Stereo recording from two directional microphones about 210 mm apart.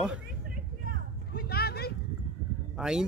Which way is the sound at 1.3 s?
45° left (ahead or behind).